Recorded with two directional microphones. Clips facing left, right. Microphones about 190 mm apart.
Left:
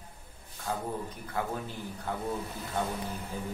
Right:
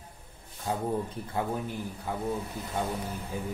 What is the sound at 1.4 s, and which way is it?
Speech, 25° right (ahead or behind).